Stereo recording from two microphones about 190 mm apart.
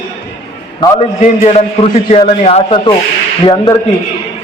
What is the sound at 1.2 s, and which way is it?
A man's voice, 35° left (ahead or behind).